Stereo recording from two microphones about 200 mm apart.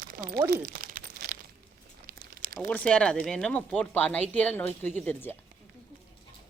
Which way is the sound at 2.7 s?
5° left (ahead or behind).